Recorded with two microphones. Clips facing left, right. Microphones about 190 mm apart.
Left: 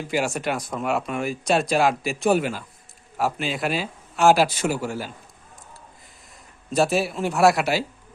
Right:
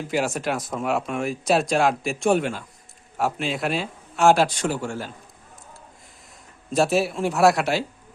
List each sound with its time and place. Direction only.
0.1 s speech: centre (ahead or behind)
6.7 s speech: centre (ahead or behind)